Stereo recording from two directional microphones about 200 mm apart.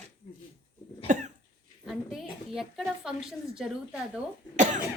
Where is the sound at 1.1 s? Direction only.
40° right (ahead or behind).